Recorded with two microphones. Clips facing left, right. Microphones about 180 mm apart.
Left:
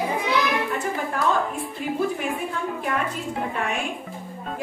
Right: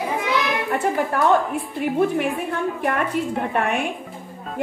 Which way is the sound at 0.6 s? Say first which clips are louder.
Right 5 dB; 65° right (ahead or behind).